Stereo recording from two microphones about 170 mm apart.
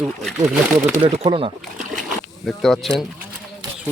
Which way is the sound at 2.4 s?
Centre (ahead or behind).